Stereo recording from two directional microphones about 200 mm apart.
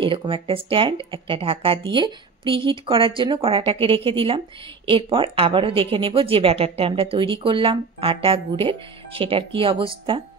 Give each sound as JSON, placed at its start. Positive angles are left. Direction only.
{"t": 0.0, "sound": "speech", "side_deg": -25}